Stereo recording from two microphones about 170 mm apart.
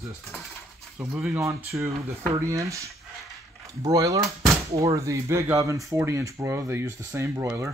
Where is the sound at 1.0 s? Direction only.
5° right (ahead or behind).